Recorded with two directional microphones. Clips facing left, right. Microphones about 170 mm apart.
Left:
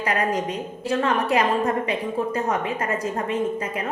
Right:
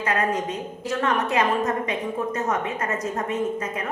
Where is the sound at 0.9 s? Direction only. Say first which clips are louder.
Left 2 dB; 30° left (ahead or behind).